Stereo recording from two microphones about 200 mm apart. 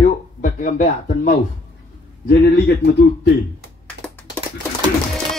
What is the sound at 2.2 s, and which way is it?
Speech, 55° left (ahead or behind).